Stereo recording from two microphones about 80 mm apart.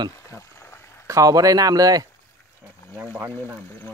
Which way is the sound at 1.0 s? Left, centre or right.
Right.